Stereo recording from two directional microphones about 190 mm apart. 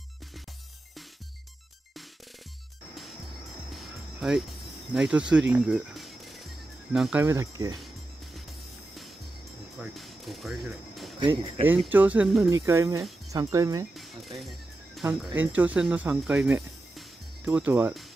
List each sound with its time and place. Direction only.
3.7 s music: 5° right (ahead or behind)
4.9 s speech: 5° right (ahead or behind)
5.5 s music: centre (ahead or behind)
9.8 s music: centre (ahead or behind)
11.1 s speech: 25° right (ahead or behind)
11.8 s speech: 10° right (ahead or behind)
15.0 s speech: 10° right (ahead or behind)